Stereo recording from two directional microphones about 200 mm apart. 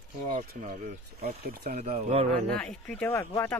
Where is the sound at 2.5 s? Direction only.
5° left (ahead or behind).